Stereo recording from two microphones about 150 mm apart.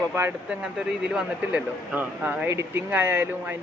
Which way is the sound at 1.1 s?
10° right (ahead or behind).